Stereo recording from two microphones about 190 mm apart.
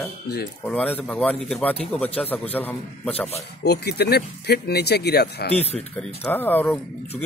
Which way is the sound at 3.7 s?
60° left (ahead or behind).